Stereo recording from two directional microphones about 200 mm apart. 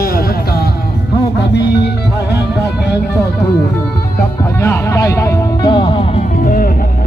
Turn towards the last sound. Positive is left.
turn(degrees=45)  # may be behind; listen again after turning